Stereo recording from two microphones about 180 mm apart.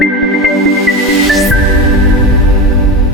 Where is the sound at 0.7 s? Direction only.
Centre (ahead or behind).